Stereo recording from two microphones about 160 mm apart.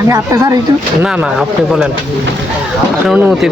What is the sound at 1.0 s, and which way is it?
Speech, 5° right (ahead or behind).